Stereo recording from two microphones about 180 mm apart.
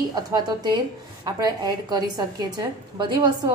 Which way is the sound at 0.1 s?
20° right (ahead or behind).